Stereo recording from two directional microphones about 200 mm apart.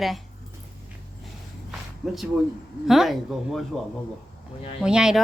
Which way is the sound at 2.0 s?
Centre (ahead or behind).